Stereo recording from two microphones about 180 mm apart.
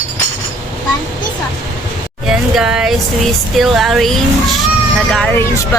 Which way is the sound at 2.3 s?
5° right (ahead or behind).